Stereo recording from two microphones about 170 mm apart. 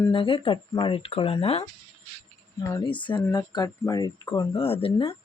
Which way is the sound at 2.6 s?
20° left (ahead or behind).